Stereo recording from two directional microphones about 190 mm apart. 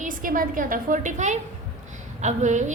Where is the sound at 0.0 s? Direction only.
45° right (ahead or behind).